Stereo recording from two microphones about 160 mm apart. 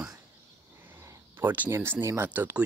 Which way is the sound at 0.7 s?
15° right (ahead or behind).